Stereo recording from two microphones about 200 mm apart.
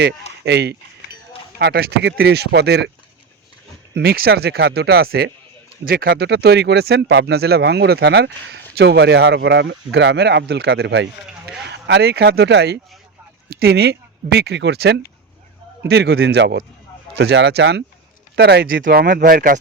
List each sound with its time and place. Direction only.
0.4 s speech: 55° right (ahead or behind)
3.9 s speech: 50° right (ahead or behind)
18.9 s speech: 50° right (ahead or behind)